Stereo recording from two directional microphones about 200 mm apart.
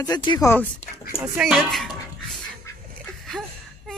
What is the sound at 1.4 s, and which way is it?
Speech, centre (ahead or behind).